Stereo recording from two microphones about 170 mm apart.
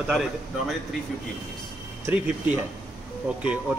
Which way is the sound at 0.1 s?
5° right (ahead or behind).